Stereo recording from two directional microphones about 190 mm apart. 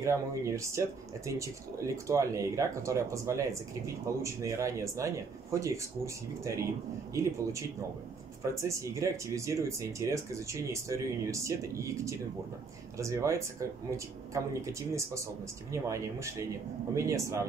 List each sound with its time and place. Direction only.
0.0 s speech: 15° right (ahead or behind)